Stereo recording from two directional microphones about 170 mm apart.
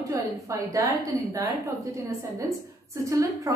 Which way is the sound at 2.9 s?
20° right (ahead or behind).